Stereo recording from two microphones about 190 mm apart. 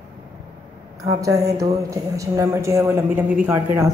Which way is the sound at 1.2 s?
20° right (ahead or behind).